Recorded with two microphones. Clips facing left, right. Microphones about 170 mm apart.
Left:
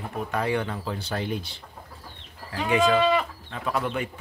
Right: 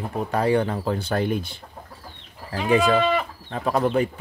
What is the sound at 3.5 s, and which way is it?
Speech, 40° right (ahead or behind).